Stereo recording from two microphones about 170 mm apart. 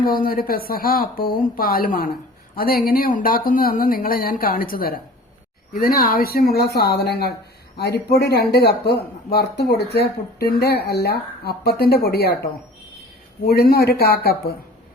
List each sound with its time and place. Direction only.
0.0 s speech: 60° left (ahead or behind)